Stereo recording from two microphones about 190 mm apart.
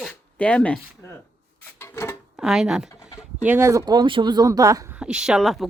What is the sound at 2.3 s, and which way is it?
Speech, 5° right (ahead or behind).